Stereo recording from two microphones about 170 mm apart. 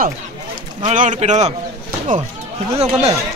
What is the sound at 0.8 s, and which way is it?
Speech, 45° right (ahead or behind).